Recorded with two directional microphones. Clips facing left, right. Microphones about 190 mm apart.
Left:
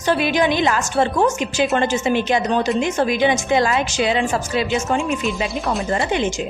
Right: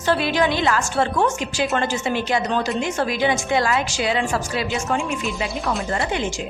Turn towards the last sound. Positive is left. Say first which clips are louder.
# left 4 dB
turn(degrees=20)  # may be behind; listen again after turning